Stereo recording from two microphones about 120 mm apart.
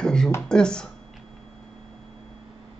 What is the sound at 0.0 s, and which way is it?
Beatboxing, 5° left (ahead or behind).